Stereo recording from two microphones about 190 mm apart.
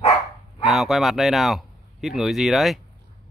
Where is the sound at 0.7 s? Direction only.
Centre (ahead or behind).